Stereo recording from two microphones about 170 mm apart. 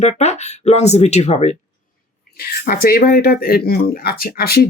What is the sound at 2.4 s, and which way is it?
Speech, 60° left (ahead or behind).